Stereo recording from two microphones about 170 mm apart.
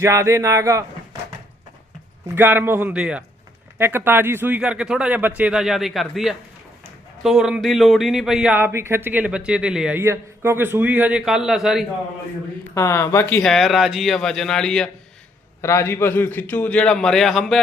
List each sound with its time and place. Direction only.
0.0 s speech: 15° right (ahead or behind)
2.2 s speech: 10° right (ahead or behind)
12.7 s a man's voice: 15° left (ahead or behind)
13.4 s speech: centre (ahead or behind)
15.6 s a man's voice: 15° left (ahead or behind); by 17.6 s centre (ahead or behind)